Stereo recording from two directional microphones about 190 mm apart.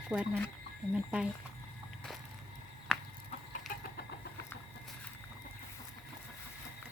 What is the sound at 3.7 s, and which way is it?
Vehicle, 45° left (ahead or behind).